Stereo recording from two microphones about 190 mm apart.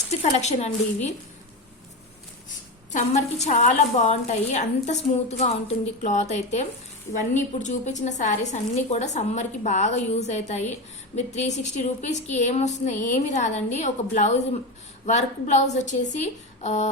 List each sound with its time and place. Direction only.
0.2 s a woman's voice: 35° left (ahead or behind)
2.9 s a woman's voice: 35° left (ahead or behind)